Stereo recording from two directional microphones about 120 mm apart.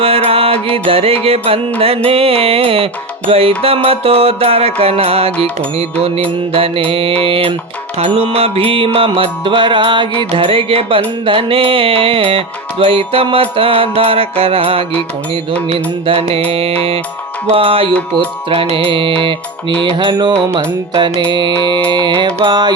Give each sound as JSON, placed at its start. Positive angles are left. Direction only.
{"t": 0.0, "sound": "music", "side_deg": -55}